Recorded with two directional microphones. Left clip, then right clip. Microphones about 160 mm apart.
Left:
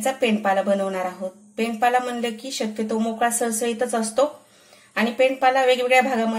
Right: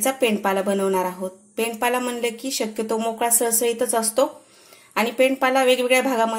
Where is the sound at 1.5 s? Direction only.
40° right (ahead or behind).